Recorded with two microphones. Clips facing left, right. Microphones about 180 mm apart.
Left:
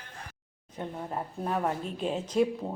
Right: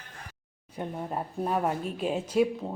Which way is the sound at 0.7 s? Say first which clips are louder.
Right 2 dB; 10° right (ahead or behind).